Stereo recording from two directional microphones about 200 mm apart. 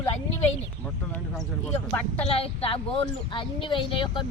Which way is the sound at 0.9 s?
Centre (ahead or behind).